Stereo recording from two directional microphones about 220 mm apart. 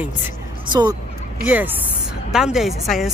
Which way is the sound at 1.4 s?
5° right (ahead or behind).